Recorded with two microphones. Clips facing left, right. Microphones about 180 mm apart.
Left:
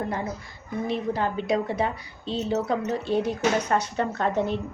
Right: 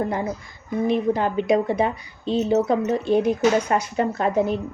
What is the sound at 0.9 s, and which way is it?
A woman's voice, 15° right (ahead or behind).